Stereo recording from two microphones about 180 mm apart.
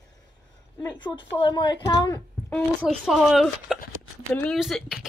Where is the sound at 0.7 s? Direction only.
20° left (ahead or behind).